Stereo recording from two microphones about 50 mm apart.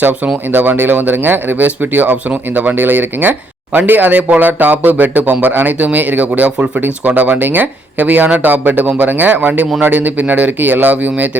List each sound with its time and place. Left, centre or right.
0.0 s speech: right